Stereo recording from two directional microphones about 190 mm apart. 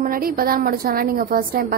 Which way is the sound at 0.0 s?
50° right (ahead or behind).